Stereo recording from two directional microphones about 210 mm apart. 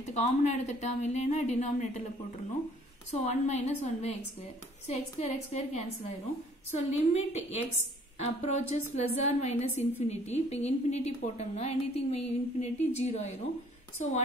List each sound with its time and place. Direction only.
0.0 s a woman's voice: 30° left (ahead or behind)
3.1 s a woman's voice: 30° left (ahead or behind)